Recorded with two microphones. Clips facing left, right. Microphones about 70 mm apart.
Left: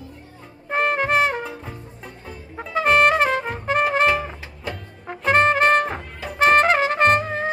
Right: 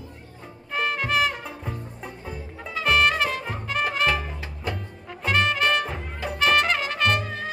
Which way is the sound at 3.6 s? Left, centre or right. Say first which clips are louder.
Left 6 dB; left.